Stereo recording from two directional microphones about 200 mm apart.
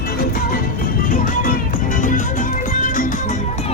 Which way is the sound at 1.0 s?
40° left (ahead or behind).